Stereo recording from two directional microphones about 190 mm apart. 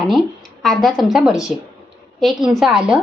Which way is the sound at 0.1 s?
Centre (ahead or behind).